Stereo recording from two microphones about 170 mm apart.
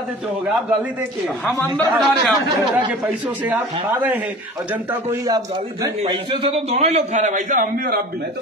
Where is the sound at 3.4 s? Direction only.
10° right (ahead or behind).